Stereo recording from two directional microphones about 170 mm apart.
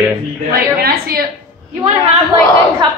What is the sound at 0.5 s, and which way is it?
Speech, 60° right (ahead or behind).